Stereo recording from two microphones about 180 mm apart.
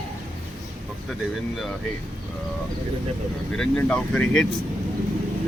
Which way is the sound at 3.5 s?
5° left (ahead or behind).